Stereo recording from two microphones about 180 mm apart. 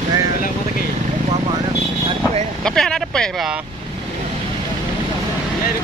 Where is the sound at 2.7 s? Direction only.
5° left (ahead or behind).